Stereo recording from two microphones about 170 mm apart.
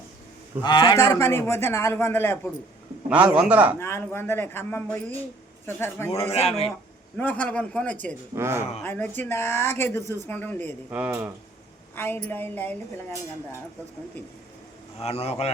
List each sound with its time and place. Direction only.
0.6 s a man's voice: 25° left (ahead or behind)
0.9 s speech: 15° left (ahead or behind)
3.1 s a man's voice: 10° right (ahead or behind)
3.8 s speech: 15° left (ahead or behind)
6.3 s speech: 35° left (ahead or behind)
7.2 s speech: 10° left (ahead or behind)
8.4 s a man's voice: 15° right (ahead or behind)
8.8 s speech: 10° left (ahead or behind)
10.9 s a man's voice: 10° right (ahead or behind)
11.9 s speech: 10° left (ahead or behind)
15.0 s speech: 35° left (ahead or behind)